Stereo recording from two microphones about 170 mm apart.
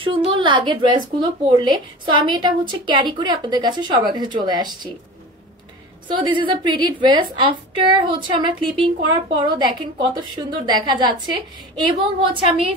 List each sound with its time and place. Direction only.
0.0 s speech: 30° right (ahead or behind)
6.0 s a woman's voice: 30° right (ahead or behind)